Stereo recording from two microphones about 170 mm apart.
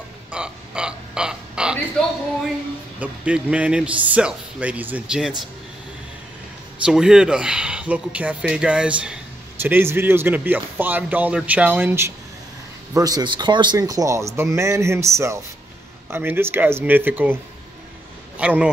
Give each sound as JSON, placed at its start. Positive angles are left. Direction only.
{"t": 0.3, "sound": "a sound", "side_deg": -5}
{"t": 3.0, "sound": "speech", "side_deg": -10}
{"t": 6.8, "sound": "speech", "side_deg": -5}
{"t": 18.4, "sound": "speech", "side_deg": -5}